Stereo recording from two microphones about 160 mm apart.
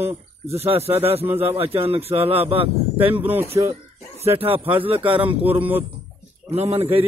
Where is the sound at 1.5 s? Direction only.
35° right (ahead or behind).